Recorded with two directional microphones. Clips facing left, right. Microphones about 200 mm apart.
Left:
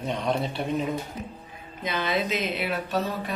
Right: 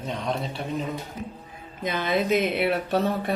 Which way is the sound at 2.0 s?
50° right (ahead or behind).